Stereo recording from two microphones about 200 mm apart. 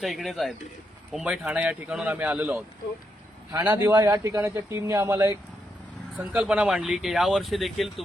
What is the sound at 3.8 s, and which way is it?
Speech, 15° right (ahead or behind).